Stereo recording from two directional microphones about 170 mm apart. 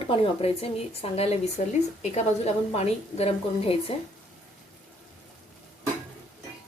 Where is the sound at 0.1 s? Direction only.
35° left (ahead or behind).